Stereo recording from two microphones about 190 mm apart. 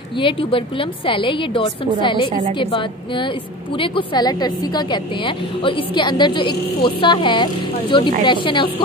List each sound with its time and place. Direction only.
0.2 s a woman's voice: 30° left (ahead or behind)